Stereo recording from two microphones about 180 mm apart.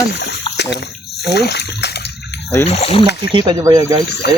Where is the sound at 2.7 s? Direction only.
35° left (ahead or behind).